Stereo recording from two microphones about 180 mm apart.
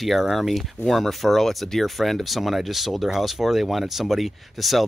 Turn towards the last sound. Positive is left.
turn(degrees=0)  # may be behind; listen again after turning